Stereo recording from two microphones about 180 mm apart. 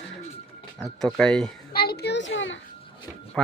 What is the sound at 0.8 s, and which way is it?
Speech, 5° left (ahead or behind).